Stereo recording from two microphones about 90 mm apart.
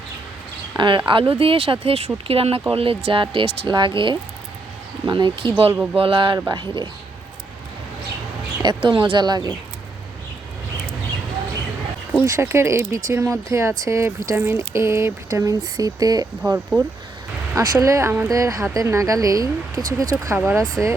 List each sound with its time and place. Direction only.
0.8 s speech: 60° right (ahead or behind); by 5.7 s 80° right
5.7 s speech: 15° right (ahead or behind)
6.0 s speech: 70° right (ahead or behind)
6.5 s speech: 60° right (ahead or behind)
8.6 s speech: 60° right (ahead or behind)
9.1 s speech: 50° right (ahead or behind)
12.2 s speech: 30° right (ahead or behind)
20.3 s speech: 25° right (ahead or behind)